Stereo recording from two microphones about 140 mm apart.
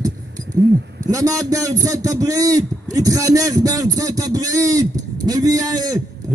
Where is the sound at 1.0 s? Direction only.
25° right (ahead or behind).